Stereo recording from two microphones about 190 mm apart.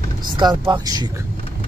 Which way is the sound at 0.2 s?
20° right (ahead or behind).